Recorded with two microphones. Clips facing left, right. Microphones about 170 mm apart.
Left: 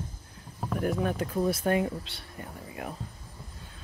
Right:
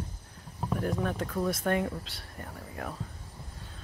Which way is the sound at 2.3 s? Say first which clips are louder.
Left 1 dB; 10° left (ahead or behind).